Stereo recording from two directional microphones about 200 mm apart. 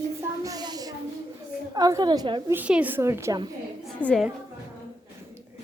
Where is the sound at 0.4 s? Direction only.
20° right (ahead or behind).